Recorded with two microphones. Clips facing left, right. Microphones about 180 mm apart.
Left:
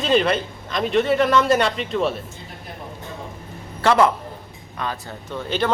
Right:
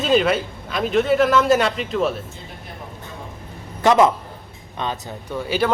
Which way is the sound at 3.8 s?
15° right (ahead or behind).